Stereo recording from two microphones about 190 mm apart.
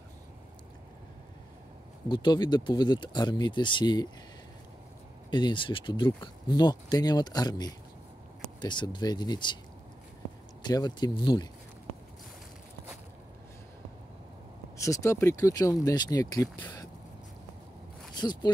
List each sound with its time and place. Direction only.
2.0 s speech: 25° left (ahead or behind)
5.3 s speech: 25° left (ahead or behind)
10.6 s speech: 20° left (ahead or behind)
14.8 s speech: 15° left (ahead or behind)
18.1 s speech: 20° left (ahead or behind)